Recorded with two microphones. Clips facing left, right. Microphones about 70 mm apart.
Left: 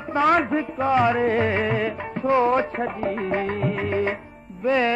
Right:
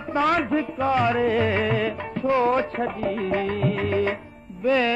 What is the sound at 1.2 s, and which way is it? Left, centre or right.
Music, left.